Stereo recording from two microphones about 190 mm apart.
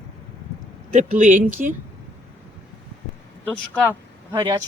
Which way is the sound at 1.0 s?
40° right (ahead or behind).